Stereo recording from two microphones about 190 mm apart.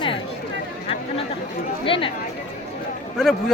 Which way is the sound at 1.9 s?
30° left (ahead or behind).